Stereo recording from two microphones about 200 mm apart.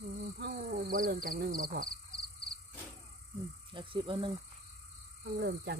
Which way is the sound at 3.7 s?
25° right (ahead or behind).